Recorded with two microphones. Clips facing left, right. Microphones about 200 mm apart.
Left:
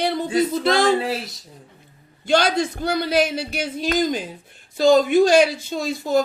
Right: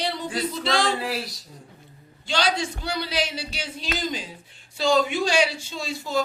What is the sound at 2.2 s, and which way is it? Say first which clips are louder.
A man's voice: left 6 dB; 55° left (ahead or behind).